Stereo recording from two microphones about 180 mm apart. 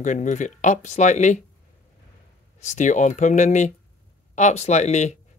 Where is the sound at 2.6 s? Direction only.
40° left (ahead or behind).